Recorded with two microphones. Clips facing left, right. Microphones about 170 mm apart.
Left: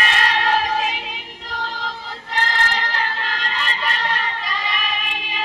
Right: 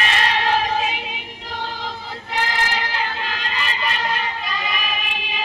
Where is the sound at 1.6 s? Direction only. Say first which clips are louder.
Even; 5° right (ahead or behind).